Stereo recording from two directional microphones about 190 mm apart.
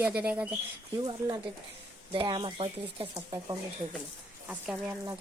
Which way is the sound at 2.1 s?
25° right (ahead or behind).